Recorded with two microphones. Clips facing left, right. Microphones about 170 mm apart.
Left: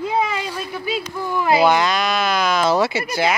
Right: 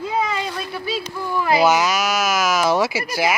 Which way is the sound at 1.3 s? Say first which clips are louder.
Left 1 dB; 20° left (ahead or behind).